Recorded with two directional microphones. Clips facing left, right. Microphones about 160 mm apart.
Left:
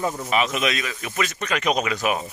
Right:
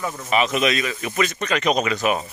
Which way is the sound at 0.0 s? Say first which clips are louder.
Left 3 dB; 25° left (ahead or behind).